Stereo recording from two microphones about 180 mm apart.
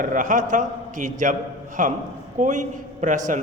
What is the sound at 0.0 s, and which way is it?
A man's voice, 45° right (ahead or behind).